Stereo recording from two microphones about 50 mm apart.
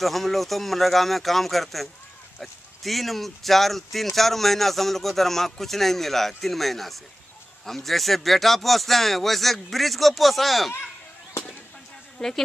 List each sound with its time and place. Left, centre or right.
0.0 s speech: centre
12.2 s speech: centre